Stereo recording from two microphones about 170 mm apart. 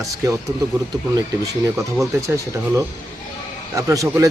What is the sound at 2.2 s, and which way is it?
Speech, 20° right (ahead or behind).